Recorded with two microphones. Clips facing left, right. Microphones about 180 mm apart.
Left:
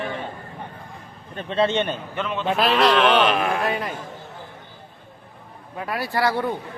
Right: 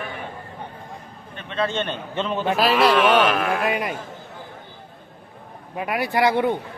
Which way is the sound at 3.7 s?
15° right (ahead or behind).